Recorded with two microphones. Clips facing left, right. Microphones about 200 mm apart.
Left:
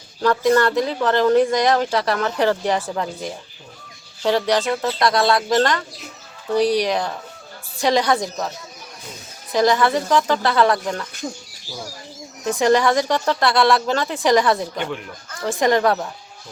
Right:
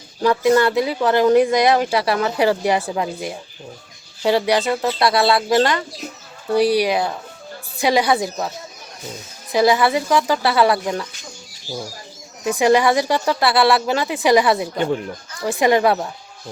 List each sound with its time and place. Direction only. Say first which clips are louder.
0.2 s speech: right 1 dB; 10° right (ahead or behind)
9.5 s speech: right 1 dB; 10° right (ahead or behind)
12.5 s speech: right 1 dB; 10° right (ahead or behind)
14.8 s speech: right 6 dB; 35° right (ahead or behind)
15.4 s speech: right 2 dB; 10° right (ahead or behind)